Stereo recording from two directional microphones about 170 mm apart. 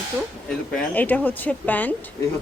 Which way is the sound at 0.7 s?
10° left (ahead or behind).